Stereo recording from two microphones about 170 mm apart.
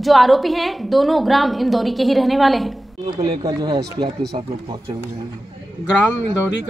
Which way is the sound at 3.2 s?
25° right (ahead or behind).